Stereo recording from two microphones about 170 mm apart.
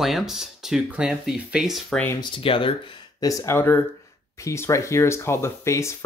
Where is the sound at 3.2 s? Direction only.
15° left (ahead or behind).